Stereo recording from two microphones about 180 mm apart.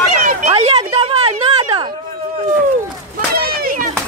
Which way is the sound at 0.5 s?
35° right (ahead or behind).